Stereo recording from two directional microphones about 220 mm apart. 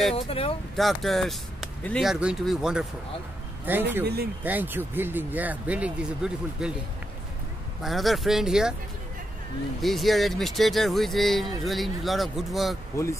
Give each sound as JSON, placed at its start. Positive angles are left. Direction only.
{"t": 0.1, "sound": "speech", "side_deg": 25}
{"t": 0.7, "sound": "speech", "side_deg": 0}
{"t": 4.0, "sound": "speech", "side_deg": -45}
{"t": 4.4, "sound": "speech", "side_deg": -10}
{"t": 7.8, "sound": "speech", "side_deg": 0}
{"t": 9.8, "sound": "speech", "side_deg": 0}
{"t": 12.9, "sound": "speech", "side_deg": 10}